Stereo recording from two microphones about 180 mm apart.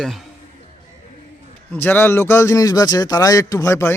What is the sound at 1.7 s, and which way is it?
Speech, 10° left (ahead or behind).